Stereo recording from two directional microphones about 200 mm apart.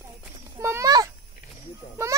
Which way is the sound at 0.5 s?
15° right (ahead or behind).